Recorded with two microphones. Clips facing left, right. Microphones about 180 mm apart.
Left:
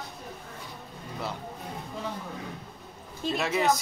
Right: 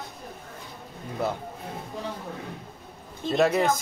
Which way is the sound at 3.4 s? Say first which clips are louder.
Right 4 dB; 45° right (ahead or behind).